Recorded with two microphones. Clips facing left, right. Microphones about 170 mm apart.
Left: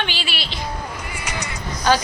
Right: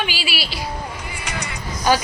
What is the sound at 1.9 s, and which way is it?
Speech, 10° right (ahead or behind).